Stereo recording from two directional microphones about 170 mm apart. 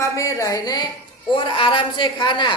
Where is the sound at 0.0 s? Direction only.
20° left (ahead or behind).